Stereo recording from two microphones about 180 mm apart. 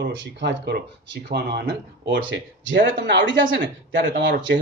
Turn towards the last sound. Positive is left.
turn(degrees=-80)